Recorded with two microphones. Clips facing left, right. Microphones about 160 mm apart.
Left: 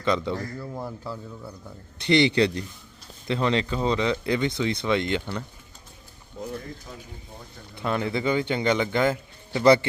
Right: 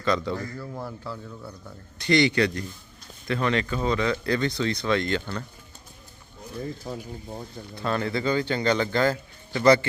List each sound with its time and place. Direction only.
0.0 s a man's voice: 20° left (ahead or behind)
2.0 s speech: 25° left (ahead or behind)
6.9 s speech: 50° right (ahead or behind)
7.8 s speech: 15° left (ahead or behind)